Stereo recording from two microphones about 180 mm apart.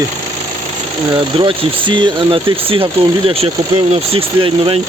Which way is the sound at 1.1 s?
30° right (ahead or behind).